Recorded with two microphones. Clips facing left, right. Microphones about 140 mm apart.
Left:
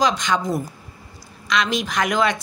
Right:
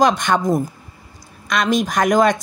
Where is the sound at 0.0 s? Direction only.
55° right (ahead or behind).